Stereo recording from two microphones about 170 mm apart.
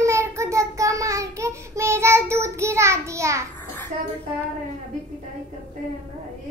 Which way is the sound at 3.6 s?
15° left (ahead or behind).